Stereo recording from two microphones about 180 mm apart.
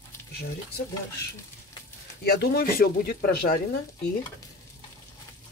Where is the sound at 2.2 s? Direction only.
60° left (ahead or behind).